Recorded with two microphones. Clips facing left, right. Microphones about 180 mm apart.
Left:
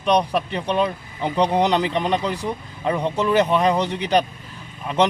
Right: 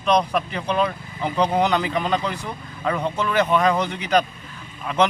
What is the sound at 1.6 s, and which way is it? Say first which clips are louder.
Speech: left 1 dB; 30° left (ahead or behind).